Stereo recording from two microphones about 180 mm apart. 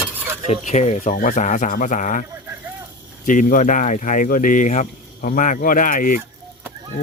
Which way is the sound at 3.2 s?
45° left (ahead or behind).